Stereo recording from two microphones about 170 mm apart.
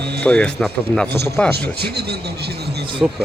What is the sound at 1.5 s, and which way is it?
Speech, 70° right (ahead or behind).